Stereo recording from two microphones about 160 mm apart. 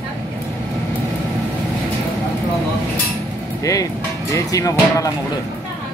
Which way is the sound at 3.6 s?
20° left (ahead or behind).